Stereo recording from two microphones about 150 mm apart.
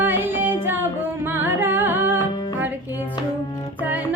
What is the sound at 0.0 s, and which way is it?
Music, 15° right (ahead or behind).